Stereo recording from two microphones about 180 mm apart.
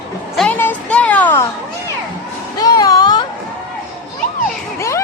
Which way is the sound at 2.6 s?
20° left (ahead or behind).